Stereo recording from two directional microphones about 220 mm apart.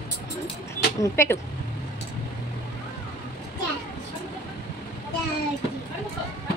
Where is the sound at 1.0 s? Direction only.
10° left (ahead or behind).